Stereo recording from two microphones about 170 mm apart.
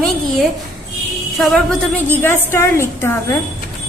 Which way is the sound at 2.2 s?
15° left (ahead or behind).